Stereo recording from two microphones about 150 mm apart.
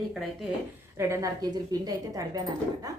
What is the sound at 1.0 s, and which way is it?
A woman's voice, 20° right (ahead or behind).